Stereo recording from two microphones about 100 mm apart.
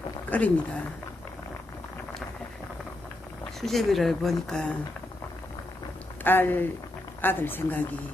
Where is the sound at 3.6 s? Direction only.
5° left (ahead or behind).